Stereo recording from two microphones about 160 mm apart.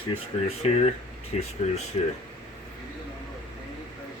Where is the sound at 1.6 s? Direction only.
45° left (ahead or behind).